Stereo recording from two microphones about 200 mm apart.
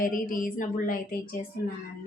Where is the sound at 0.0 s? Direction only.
45° left (ahead or behind).